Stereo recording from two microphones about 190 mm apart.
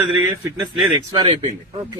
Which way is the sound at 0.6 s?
25° right (ahead or behind).